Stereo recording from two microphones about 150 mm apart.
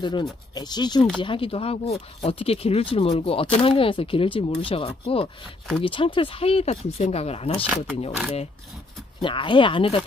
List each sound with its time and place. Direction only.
0.0 s speech: 30° left (ahead or behind)
7.6 s speech: 5° right (ahead or behind)
9.2 s speech: 35° left (ahead or behind)